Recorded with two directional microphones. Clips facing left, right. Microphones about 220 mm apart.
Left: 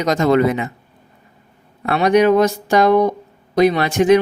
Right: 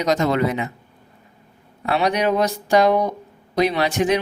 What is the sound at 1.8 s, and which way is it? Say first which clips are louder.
Speech: left 7 dB; 50° left (ahead or behind).